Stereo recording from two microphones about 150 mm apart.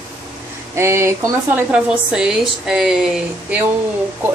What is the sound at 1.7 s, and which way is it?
A woman's voice, 5° right (ahead or behind).